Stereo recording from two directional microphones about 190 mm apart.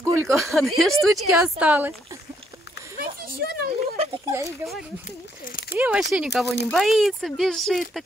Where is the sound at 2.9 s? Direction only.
50° right (ahead or behind).